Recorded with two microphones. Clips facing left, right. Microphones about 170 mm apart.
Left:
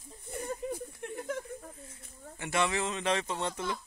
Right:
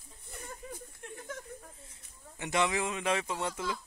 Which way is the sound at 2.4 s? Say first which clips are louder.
Even; 15° right (ahead or behind).